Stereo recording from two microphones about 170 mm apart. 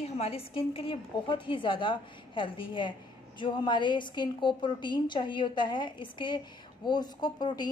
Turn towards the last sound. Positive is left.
turn(degrees=25)  # may be behind; listen again after turning